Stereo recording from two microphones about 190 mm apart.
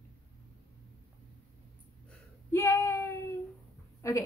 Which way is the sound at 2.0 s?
15° left (ahead or behind).